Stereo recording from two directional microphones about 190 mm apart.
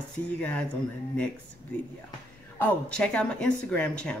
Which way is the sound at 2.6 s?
5° left (ahead or behind).